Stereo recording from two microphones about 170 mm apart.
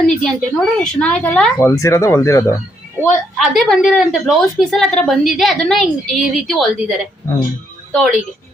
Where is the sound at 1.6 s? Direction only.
15° left (ahead or behind).